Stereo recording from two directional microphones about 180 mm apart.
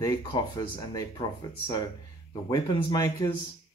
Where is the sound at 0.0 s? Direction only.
20° left (ahead or behind).